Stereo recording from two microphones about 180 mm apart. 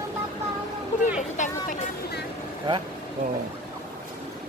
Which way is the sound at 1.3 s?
45° left (ahead or behind).